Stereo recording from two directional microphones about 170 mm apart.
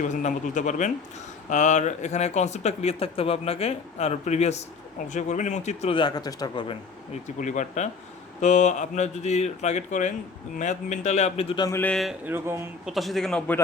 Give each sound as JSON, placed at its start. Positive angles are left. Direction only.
{"t": 0.0, "sound": "speech", "side_deg": 45}
{"t": 7.3, "sound": "speech", "side_deg": 45}
{"t": 11.6, "sound": "speech", "side_deg": 15}
{"t": 12.2, "sound": "speech", "side_deg": -15}
{"t": 12.8, "sound": "a man's voice", "side_deg": 0}